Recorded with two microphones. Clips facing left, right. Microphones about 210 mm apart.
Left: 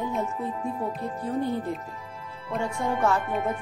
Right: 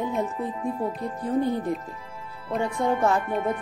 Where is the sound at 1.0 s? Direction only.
15° right (ahead or behind).